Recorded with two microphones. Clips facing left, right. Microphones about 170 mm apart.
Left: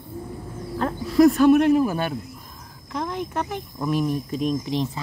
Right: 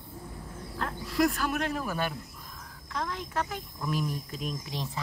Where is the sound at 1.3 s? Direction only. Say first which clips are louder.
Left 16 dB; 25° left (ahead or behind).